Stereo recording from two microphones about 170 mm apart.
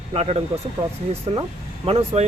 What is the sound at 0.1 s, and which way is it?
Speech, 35° right (ahead or behind).